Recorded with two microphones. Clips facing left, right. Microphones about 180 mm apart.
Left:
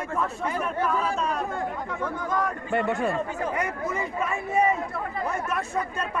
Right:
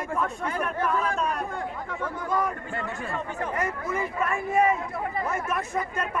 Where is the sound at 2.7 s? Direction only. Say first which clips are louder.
Left 9 dB; 70° left (ahead or behind).